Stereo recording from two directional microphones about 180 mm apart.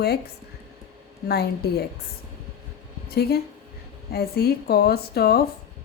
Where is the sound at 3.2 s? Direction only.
60° left (ahead or behind).